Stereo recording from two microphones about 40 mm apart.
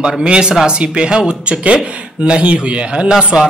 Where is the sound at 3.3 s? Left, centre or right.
Centre.